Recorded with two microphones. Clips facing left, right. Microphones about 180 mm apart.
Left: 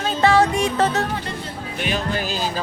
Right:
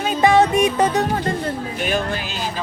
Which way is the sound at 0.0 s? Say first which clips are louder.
Right 2 dB; 15° right (ahead or behind).